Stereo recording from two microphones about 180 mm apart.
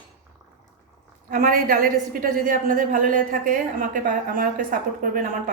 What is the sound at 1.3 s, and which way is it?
A woman's voice, 50° right (ahead or behind).